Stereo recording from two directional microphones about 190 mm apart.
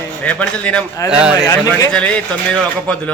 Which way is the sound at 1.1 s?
5° right (ahead or behind).